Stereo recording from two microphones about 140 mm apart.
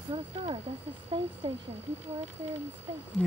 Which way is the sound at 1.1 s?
35° right (ahead or behind).